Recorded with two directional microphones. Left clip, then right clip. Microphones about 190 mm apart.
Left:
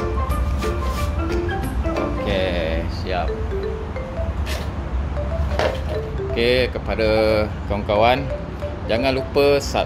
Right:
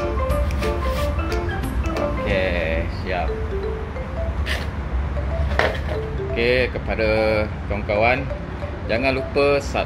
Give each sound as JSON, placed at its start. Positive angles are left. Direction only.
{"t": 2.2, "sound": "music", "side_deg": 10}
{"t": 6.3, "sound": "speech", "side_deg": 15}